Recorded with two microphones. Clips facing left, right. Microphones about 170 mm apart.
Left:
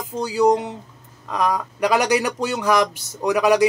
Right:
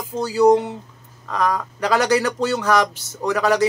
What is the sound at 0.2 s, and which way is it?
Speech, 15° left (ahead or behind).